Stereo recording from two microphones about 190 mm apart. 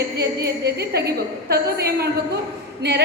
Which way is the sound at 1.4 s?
55° right (ahead or behind).